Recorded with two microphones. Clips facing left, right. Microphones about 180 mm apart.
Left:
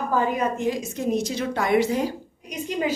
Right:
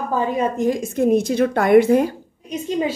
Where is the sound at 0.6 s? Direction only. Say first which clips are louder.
Right 7 dB; 50° right (ahead or behind).